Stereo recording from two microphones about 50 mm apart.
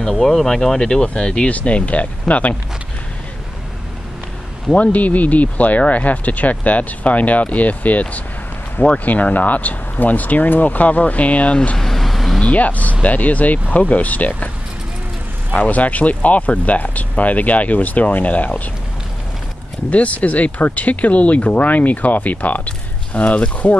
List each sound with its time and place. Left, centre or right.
0.0 s speech: centre; by 2.5 s left
4.6 s speech: left
11.8 s vehicle: centre
12.4 s speech: left
15.5 s speech: left
19.9 s speech: left